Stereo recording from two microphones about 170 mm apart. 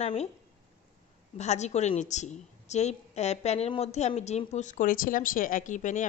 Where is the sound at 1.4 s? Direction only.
40° left (ahead or behind).